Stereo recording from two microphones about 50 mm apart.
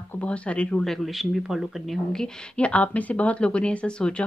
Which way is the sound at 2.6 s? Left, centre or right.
Left.